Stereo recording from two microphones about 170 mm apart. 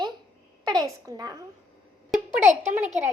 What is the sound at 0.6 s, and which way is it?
Speech, 20° right (ahead or behind).